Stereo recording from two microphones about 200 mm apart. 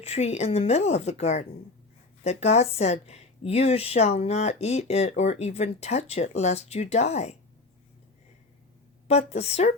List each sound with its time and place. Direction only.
0.0 s speech: 30° left (ahead or behind)
9.0 s speech: 30° left (ahead or behind)